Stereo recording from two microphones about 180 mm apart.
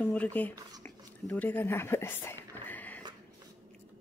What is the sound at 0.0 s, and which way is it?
Speech, 10° left (ahead or behind).